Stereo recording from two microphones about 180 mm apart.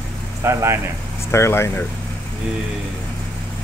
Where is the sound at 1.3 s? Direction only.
15° left (ahead or behind).